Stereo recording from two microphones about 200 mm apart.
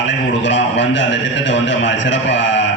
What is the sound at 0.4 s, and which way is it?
A man's voice, 65° left (ahead or behind).